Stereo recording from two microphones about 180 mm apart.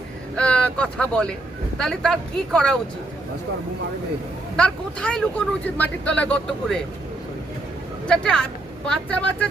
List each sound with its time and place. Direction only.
0.3 s speech: 5° left (ahead or behind)
4.5 s speech: 5° left (ahead or behind)
8.0 s speech: 5° left (ahead or behind)